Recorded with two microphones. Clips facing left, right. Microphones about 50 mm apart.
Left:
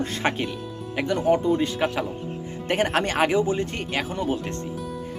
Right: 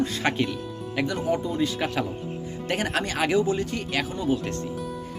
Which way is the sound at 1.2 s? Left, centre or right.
Left.